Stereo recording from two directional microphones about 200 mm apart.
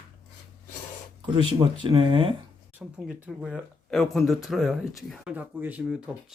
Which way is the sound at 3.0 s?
5° right (ahead or behind).